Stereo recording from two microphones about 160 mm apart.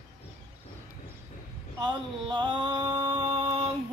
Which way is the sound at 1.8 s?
30° right (ahead or behind).